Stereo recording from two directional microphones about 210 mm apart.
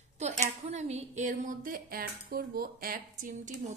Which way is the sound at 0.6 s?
30° right (ahead or behind).